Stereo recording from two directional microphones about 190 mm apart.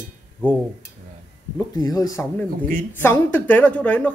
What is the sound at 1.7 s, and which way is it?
A woman's voice, 20° left (ahead or behind).